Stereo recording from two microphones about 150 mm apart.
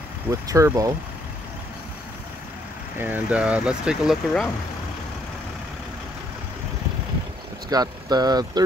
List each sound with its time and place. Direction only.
0.3 s speech: 20° right (ahead or behind)
3.0 s speech: 10° right (ahead or behind)
7.7 s speech: 25° right (ahead or behind)